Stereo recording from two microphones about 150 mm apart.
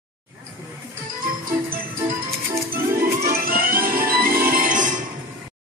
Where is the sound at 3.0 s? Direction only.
80° right; by 5.0 s 60° right (ahead or behind).